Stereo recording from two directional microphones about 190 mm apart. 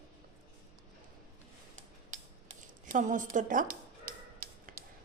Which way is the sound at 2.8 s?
40° right (ahead or behind).